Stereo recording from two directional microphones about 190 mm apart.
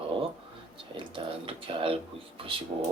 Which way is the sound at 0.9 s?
25° right (ahead or behind).